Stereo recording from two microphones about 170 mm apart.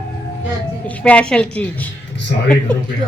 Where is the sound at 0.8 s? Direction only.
10° left (ahead or behind).